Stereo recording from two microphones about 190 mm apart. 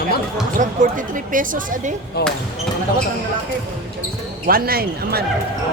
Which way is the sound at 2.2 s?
55° left (ahead or behind).